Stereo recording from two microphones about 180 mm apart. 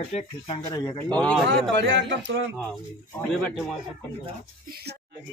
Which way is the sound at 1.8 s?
70° right (ahead or behind).